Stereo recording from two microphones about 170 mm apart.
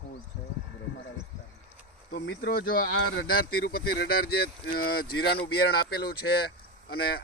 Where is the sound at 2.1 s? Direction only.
60° left (ahead or behind).